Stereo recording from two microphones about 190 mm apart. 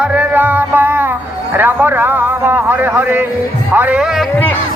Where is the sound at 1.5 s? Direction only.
10° right (ahead or behind).